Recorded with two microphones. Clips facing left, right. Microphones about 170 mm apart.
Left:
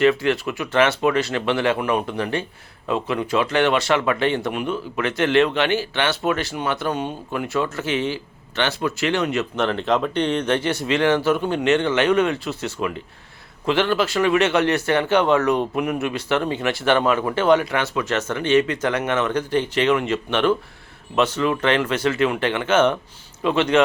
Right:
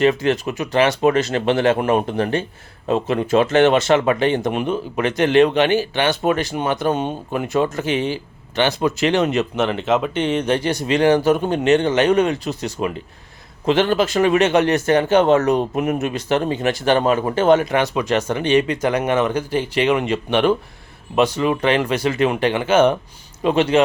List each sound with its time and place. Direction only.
0.0 s speech: 20° right (ahead or behind)
0.3 s speech: 40° right (ahead or behind)
3.7 s speech: 20° right (ahead or behind)
9.6 s speech: 5° right (ahead or behind)
10.6 s speech: 40° right (ahead or behind)
12.8 s speech: 25° right (ahead or behind)
14.8 s speech: 40° right (ahead or behind)
17.7 s speech: 20° right (ahead or behind)